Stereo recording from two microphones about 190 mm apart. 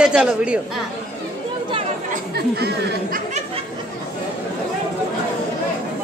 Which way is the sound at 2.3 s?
60° right (ahead or behind).